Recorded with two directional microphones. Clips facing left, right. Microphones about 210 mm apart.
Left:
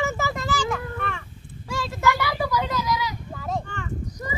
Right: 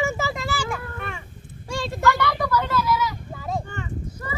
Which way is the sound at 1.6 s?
25° right (ahead or behind).